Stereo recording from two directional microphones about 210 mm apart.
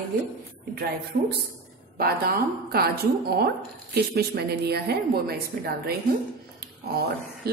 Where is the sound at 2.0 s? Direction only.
45° right (ahead or behind).